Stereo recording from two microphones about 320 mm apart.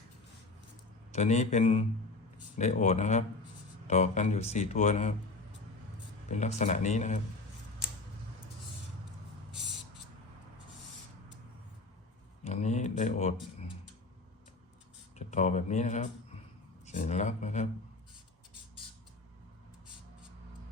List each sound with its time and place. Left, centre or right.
1.1 s speech: left
6.3 s speech: left
12.5 s a sound: left
15.1 s speech: left